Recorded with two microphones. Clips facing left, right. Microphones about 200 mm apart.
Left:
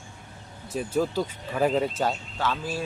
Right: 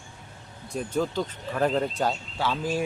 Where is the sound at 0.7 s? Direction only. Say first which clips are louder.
Left 1 dB; 5° left (ahead or behind).